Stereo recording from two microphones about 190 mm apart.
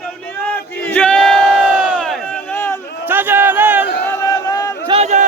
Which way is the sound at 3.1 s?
10° right (ahead or behind).